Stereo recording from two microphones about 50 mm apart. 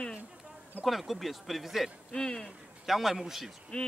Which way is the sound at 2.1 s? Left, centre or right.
Centre.